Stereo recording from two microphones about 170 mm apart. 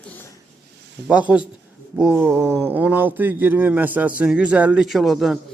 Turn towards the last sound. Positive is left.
turn(degrees=0)  # may be behind; listen again after turning